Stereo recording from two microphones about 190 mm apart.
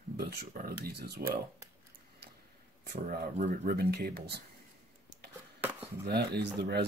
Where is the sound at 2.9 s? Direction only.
45° right (ahead or behind).